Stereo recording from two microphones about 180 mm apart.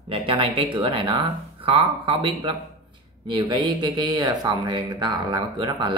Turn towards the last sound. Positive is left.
turn(degrees=-25)  # may be behind; listen again after turning